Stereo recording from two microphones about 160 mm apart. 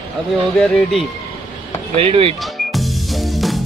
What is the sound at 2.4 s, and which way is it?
Music, centre (ahead or behind).